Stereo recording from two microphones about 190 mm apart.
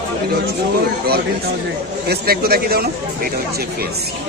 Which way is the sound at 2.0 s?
55° right (ahead or behind).